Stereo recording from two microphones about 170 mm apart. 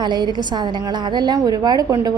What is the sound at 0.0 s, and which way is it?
A woman's voice, 25° right (ahead or behind).